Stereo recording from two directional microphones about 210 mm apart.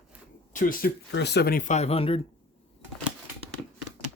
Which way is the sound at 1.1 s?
55° left (ahead or behind).